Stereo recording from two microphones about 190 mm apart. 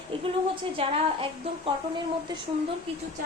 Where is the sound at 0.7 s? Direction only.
30° right (ahead or behind).